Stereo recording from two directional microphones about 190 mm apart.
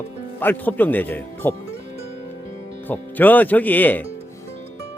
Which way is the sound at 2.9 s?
10° left (ahead or behind).